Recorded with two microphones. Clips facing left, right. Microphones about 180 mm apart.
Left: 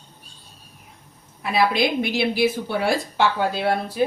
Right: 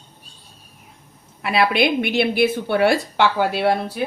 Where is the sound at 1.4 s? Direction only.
70° right (ahead or behind).